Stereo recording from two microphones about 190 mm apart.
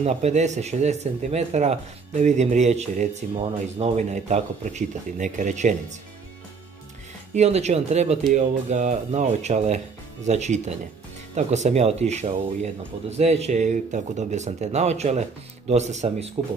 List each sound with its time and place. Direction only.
0.0 s speech: 35° right (ahead or behind)
7.3 s speech: 35° right (ahead or behind)